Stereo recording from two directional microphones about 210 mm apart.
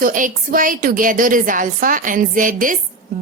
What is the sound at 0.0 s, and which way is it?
A woman's voice, 40° right (ahead or behind).